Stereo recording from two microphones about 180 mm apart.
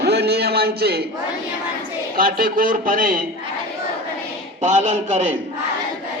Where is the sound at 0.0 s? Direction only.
65° right (ahead or behind).